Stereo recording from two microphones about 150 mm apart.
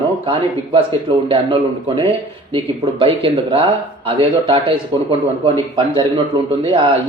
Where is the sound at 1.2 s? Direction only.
35° right (ahead or behind).